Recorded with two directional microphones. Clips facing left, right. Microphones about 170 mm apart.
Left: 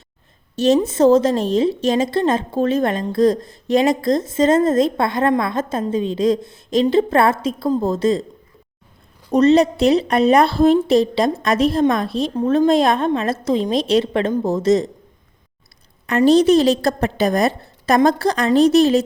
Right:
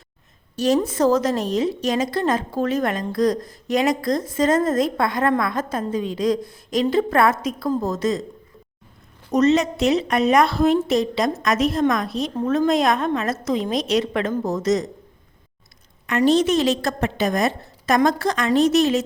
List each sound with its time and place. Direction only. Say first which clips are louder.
0.5 s a woman's voice: left 4 dB; 25° left (ahead or behind)
9.3 s a woman's voice: left 4 dB; 35° left (ahead or behind)
16.0 s a woman's voice: left 5 dB; 35° left (ahead or behind)